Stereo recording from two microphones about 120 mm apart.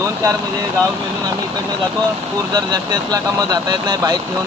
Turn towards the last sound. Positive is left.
turn(degrees=-30)  # may be behind; listen again after turning